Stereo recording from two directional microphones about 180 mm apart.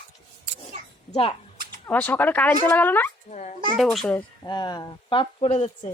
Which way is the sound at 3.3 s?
40° left (ahead or behind).